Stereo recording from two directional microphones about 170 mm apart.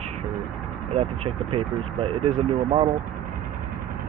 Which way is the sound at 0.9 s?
35° right (ahead or behind).